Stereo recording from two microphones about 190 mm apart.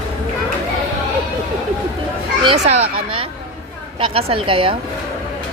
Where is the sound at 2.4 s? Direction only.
30° right (ahead or behind).